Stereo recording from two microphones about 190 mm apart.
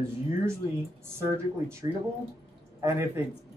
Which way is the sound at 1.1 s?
15° right (ahead or behind).